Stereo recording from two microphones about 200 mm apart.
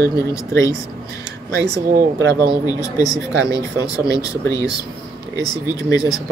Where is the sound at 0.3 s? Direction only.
15° left (ahead or behind).